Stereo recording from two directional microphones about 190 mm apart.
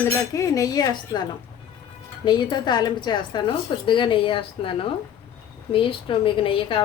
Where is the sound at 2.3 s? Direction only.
25° left (ahead or behind).